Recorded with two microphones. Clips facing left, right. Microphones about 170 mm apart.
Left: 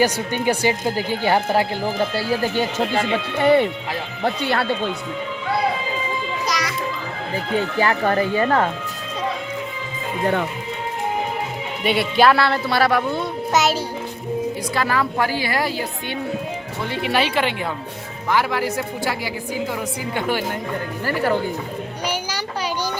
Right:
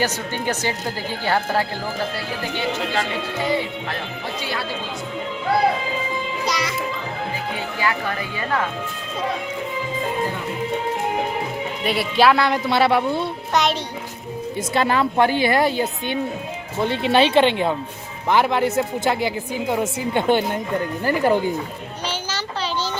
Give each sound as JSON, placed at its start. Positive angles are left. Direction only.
{"t": 0.0, "sound": "speech", "side_deg": 10}
{"t": 3.3, "sound": "speech", "side_deg": 60}
{"t": 6.4, "sound": "music", "side_deg": -25}
{"t": 7.8, "sound": "speech", "side_deg": 45}
{"t": 11.8, "sound": "speech", "side_deg": 0}
{"t": 12.3, "sound": "a woman's voice", "side_deg": -15}
{"t": 13.5, "sound": "speech", "side_deg": 5}
{"t": 14.7, "sound": "a woman's voice", "side_deg": -25}
{"t": 22.0, "sound": "a sound", "side_deg": 10}